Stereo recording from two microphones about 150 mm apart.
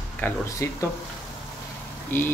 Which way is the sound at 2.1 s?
15° left (ahead or behind).